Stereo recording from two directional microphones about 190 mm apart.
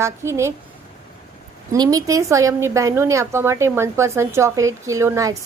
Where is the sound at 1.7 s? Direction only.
20° right (ahead or behind).